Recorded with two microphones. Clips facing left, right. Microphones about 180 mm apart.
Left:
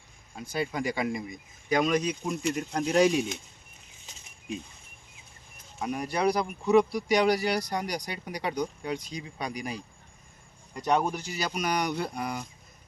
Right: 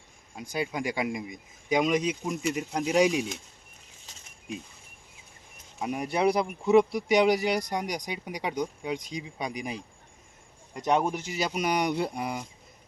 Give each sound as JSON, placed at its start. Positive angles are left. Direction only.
{"t": 0.5, "sound": "speech", "side_deg": -10}
{"t": 2.4, "sound": "speech", "side_deg": -10}
{"t": 5.8, "sound": "speech", "side_deg": -20}